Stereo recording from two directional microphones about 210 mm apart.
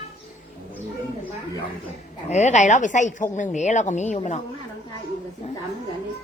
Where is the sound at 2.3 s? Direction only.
35° left (ahead or behind).